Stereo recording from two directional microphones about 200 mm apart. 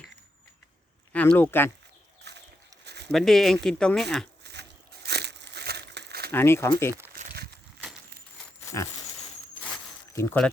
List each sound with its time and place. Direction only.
1.1 s speech: 10° left (ahead or behind)
2.8 s a sound: 55° right (ahead or behind)
3.1 s speech: centre (ahead or behind)
5.0 s crumpling: 55° right (ahead or behind)
6.3 s speech: 10° left (ahead or behind)
10.1 s speech: 15° left (ahead or behind)